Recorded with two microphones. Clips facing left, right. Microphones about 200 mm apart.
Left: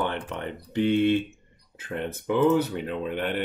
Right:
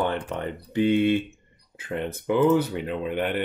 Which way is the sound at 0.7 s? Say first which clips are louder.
Right 1 dB; 10° right (ahead or behind).